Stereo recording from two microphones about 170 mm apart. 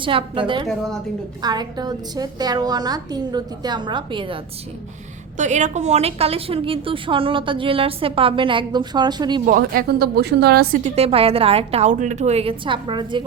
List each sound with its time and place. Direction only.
0.0 s a woman's voice: 30° right (ahead or behind)
5.4 s a woman's voice: 45° right (ahead or behind); by 9.4 s 25° right (ahead or behind)
9.5 s a woman's voice: 60° right (ahead or behind)
10.8 s a woman's voice: 35° right (ahead or behind)